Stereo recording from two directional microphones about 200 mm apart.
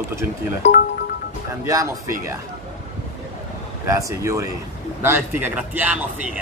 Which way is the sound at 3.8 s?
15° right (ahead or behind).